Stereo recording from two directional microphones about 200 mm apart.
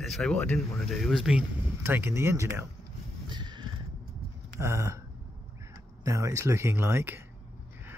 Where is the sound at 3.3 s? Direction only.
20° right (ahead or behind).